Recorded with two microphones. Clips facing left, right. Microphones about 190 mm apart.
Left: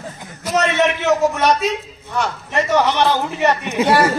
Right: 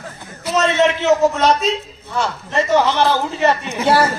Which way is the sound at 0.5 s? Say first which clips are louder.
Right 1 dB; 15° left (ahead or behind).